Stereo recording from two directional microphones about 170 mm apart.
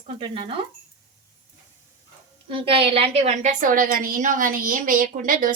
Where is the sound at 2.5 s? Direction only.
30° right (ahead or behind).